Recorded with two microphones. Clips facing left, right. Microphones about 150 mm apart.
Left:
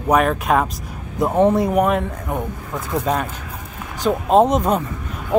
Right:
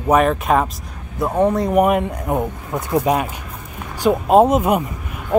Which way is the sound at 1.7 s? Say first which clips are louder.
Right 2 dB; 10° right (ahead or behind).